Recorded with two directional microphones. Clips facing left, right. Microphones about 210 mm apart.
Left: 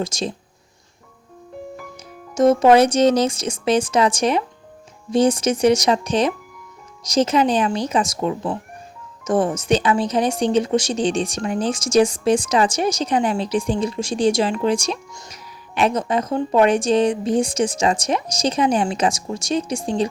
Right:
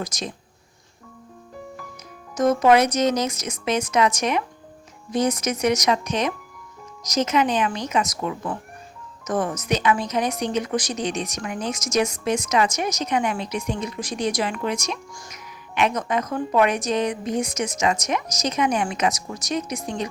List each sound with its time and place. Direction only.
0.0 s speech: 30° left (ahead or behind)
2.3 s a woman's voice: 30° left (ahead or behind)